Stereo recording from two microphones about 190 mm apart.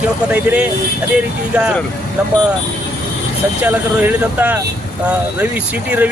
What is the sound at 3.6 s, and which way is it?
Speech, 10° right (ahead or behind).